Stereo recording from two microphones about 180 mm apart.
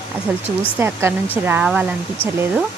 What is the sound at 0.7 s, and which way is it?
Speech, 15° right (ahead or behind).